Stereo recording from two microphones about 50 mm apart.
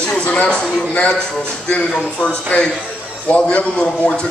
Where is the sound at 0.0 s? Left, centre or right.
Left.